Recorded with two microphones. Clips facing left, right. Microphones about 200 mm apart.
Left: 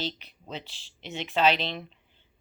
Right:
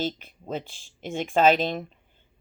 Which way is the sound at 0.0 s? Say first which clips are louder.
Right 5 dB; 50° right (ahead or behind).